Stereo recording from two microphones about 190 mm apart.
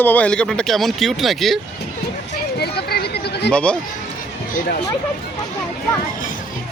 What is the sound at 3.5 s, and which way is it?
Speech, 5° left (ahead or behind).